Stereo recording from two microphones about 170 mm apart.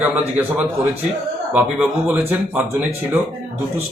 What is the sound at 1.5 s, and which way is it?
Speech, 10° right (ahead or behind).